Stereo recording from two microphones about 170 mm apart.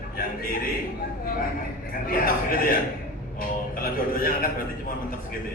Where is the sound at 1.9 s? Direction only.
55° left (ahead or behind).